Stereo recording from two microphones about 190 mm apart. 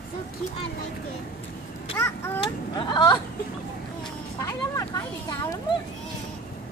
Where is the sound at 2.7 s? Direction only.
25° left (ahead or behind).